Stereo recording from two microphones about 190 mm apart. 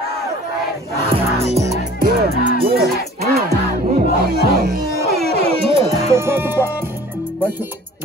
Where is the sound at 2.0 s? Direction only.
50° right (ahead or behind).